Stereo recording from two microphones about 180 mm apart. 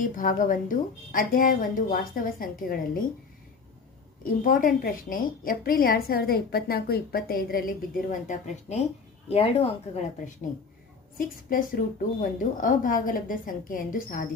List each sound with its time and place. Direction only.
0.0 s a woman's voice: 45° left (ahead or behind)
4.2 s a woman's voice: 50° left (ahead or behind)
8.3 s speech: 40° left (ahead or behind)
11.2 s a woman's voice: 50° left (ahead or behind)